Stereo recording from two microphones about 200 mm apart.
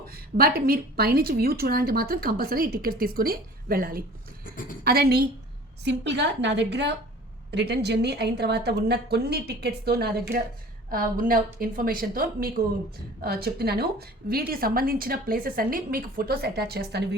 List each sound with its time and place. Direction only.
0.0 s a woman's voice: 50° right (ahead or behind)